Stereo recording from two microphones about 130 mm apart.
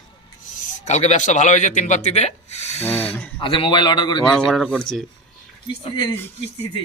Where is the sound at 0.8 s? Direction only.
65° left (ahead or behind).